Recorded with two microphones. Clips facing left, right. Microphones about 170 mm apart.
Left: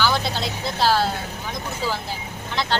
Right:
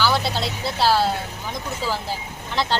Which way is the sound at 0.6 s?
10° right (ahead or behind).